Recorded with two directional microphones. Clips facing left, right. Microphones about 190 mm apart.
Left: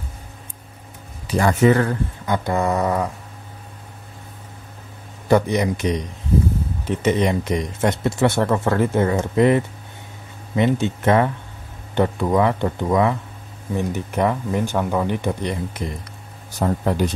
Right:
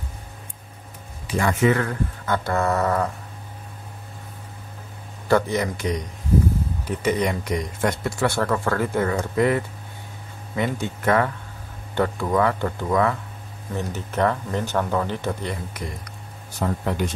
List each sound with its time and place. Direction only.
1.2 s speech: 35° left (ahead or behind)
2.2 s a man's voice: 15° left (ahead or behind)
5.3 s a man's voice: 20° left (ahead or behind)
16.5 s speech: 40° left (ahead or behind)